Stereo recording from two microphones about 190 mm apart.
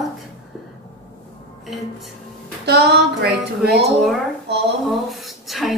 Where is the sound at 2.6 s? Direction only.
60° right (ahead or behind).